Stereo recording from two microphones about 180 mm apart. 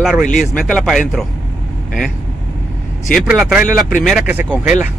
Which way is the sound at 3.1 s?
5° right (ahead or behind).